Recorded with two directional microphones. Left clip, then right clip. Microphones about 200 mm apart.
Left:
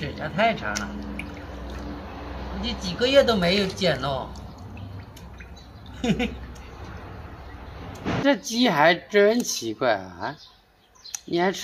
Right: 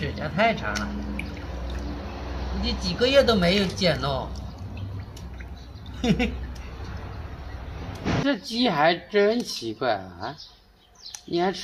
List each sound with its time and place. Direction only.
0.2 s speech: centre (ahead or behind)
1.3 s boat: 60° right (ahead or behind)
3.0 s speech: centre (ahead or behind)
5.9 s speech: centre (ahead or behind)
7.8 s a sound: 60° right (ahead or behind)
8.3 s speech: 50° left (ahead or behind)